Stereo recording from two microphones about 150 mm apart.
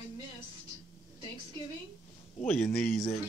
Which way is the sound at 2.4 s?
5° left (ahead or behind).